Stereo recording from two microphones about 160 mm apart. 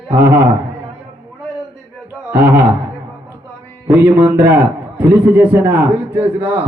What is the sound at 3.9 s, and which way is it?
Speech, 15° right (ahead or behind).